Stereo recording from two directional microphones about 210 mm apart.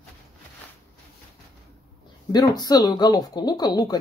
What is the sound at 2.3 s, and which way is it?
Speech, 20° left (ahead or behind).